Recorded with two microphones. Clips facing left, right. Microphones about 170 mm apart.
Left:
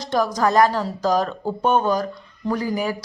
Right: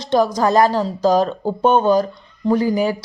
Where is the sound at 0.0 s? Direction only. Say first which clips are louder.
Right 5 dB; 25° right (ahead or behind).